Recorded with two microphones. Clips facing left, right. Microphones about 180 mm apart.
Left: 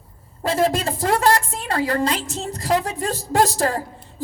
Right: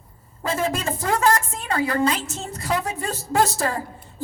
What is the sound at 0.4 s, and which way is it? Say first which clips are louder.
A woman's voice: left 4 dB; 35° left (ahead or behind).